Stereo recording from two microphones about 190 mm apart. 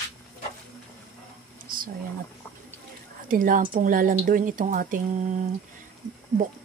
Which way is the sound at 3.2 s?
45° right (ahead or behind).